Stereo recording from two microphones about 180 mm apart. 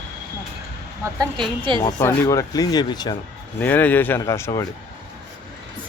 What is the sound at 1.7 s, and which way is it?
Speech, 25° right (ahead or behind).